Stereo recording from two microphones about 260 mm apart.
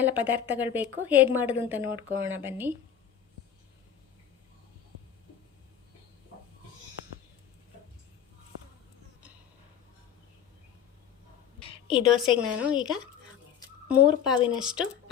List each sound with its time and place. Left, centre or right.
0.0 s a woman's voice: centre
11.6 s a sound: centre
12.0 s speech: centre